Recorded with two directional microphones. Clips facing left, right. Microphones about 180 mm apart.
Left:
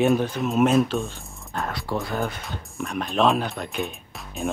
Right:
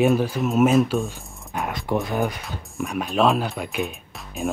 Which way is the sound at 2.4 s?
Centre (ahead or behind).